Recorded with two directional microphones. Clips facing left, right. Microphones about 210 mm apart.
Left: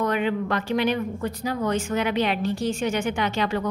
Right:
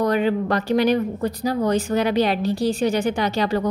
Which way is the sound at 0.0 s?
35° right (ahead or behind).